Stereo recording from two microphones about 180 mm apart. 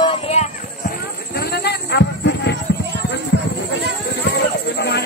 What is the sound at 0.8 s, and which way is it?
Music, 60° left (ahead or behind).